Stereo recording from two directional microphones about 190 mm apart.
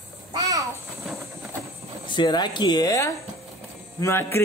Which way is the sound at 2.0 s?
25° left (ahead or behind).